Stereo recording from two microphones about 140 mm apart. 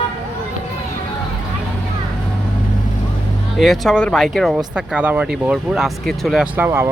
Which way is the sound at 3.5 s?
Centre (ahead or behind).